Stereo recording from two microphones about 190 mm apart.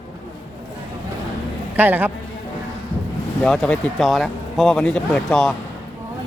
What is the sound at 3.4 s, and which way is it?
Speech, 5° left (ahead or behind).